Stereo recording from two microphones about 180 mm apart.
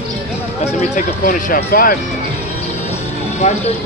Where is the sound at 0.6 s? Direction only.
40° left (ahead or behind).